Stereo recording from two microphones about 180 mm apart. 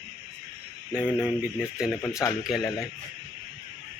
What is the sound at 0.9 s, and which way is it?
Speech, 5° right (ahead or behind).